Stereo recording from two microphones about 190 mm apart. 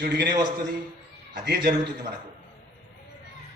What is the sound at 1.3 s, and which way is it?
Speech, 55° right (ahead or behind).